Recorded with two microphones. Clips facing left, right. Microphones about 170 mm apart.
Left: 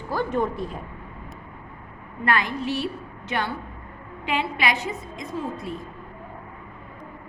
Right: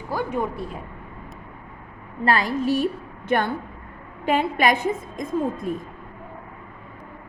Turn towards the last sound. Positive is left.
turn(degrees=-50)  # may be behind; listen again after turning